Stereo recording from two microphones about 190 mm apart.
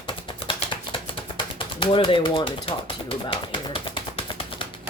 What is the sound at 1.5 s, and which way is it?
Speech, 25° left (ahead or behind).